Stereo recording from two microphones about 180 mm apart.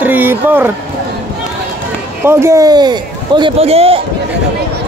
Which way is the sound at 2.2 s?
15° right (ahead or behind).